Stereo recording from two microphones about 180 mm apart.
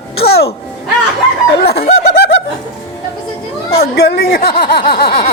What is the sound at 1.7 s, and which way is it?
Snicker, 60° left (ahead or behind).